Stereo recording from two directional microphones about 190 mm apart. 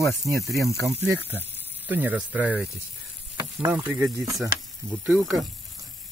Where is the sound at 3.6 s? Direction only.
20° right (ahead or behind).